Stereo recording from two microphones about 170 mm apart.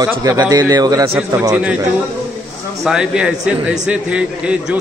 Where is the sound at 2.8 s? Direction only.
5° right (ahead or behind).